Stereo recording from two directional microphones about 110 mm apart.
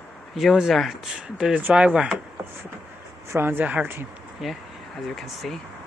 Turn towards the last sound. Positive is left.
turn(degrees=0)  # may be behind; listen again after turning